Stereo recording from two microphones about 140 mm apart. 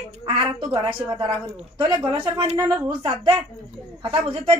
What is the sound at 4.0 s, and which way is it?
Speech, 45° right (ahead or behind).